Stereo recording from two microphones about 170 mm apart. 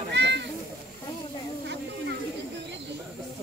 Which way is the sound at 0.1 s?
90° right.